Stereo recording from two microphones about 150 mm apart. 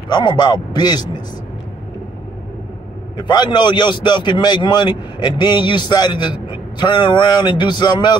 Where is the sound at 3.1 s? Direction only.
30° left (ahead or behind).